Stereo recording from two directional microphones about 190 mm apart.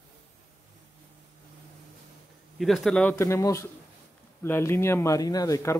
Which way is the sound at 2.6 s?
Centre (ahead or behind).